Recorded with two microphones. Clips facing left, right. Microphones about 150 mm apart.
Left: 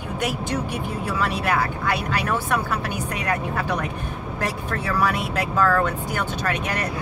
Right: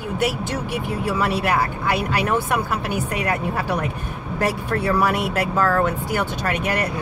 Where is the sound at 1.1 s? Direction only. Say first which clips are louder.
Right 2 dB; 10° right (ahead or behind).